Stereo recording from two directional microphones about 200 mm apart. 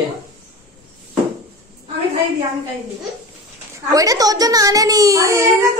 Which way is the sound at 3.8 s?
15° right (ahead or behind).